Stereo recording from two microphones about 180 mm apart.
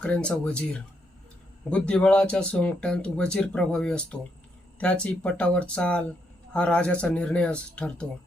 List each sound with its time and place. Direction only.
0.0 s speech: 5° left (ahead or behind)